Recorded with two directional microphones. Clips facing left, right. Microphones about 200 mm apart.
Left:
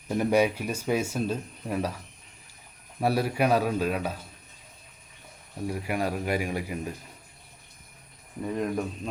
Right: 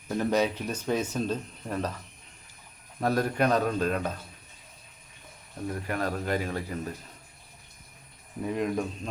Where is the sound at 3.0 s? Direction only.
10° left (ahead or behind).